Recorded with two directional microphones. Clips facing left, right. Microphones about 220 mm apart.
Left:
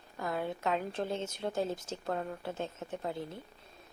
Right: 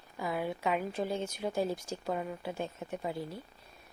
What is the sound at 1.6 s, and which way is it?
Speech, 25° left (ahead or behind).